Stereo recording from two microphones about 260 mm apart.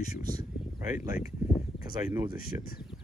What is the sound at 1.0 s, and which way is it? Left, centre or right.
Speech, left.